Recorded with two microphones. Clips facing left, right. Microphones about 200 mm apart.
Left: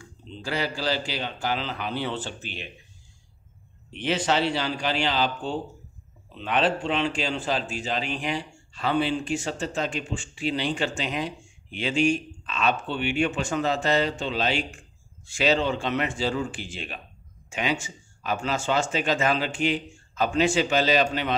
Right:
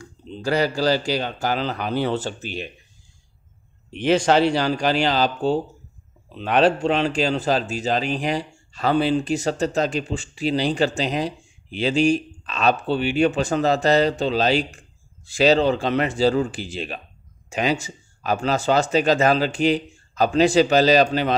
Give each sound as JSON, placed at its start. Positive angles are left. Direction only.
{"t": 0.0, "sound": "a man's voice", "side_deg": -40}
{"t": 4.0, "sound": "a man's voice", "side_deg": -45}